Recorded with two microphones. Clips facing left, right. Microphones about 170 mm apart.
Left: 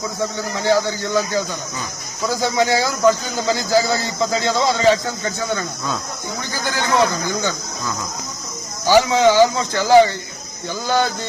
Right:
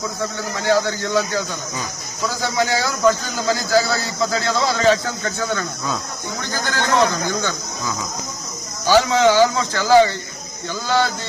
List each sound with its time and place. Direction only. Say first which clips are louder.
0.3 s a man's voice: even; 15° left (ahead or behind)
6.7 s a man's voice: even; 15° left (ahead or behind)
8.9 s a man's voice: left 1 dB; 15° left (ahead or behind)